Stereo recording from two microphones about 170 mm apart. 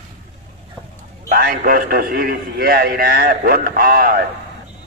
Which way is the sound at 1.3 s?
60° right (ahead or behind).